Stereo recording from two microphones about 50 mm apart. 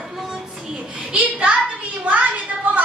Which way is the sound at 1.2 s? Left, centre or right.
Right.